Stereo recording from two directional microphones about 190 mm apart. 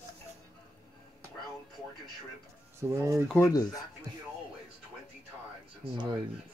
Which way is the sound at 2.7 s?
15° right (ahead or behind).